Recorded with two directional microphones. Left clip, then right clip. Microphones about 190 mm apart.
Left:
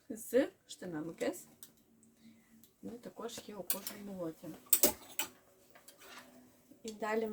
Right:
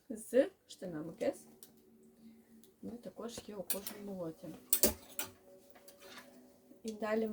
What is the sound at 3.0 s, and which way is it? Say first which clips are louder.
Speech: left 1 dB; 15° left (ahead or behind).